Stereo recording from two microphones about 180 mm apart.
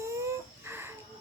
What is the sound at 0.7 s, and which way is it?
Music, 15° right (ahead or behind).